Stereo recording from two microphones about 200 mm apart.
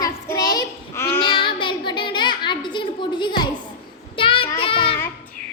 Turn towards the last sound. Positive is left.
turn(degrees=25)  # may be behind; listen again after turning